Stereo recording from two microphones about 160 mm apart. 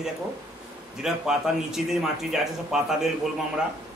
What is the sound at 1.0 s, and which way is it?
Speech, centre (ahead or behind).